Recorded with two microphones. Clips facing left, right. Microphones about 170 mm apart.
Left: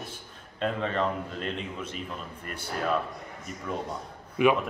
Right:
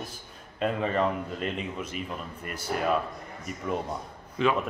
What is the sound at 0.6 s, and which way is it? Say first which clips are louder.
A man's voice: right 2 dB; 5° right (ahead or behind).